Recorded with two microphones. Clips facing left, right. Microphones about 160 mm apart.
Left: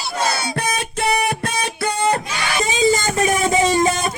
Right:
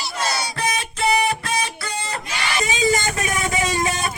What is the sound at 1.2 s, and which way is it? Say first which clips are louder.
Guitar: left 1 dB; 55° left (ahead or behind).